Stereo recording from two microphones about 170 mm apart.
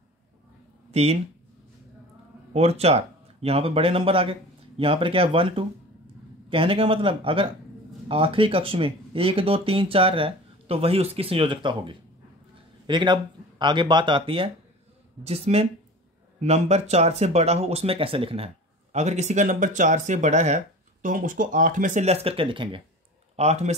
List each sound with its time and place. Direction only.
0.9 s speech: 40° right (ahead or behind)
2.5 s speech: 35° right (ahead or behind)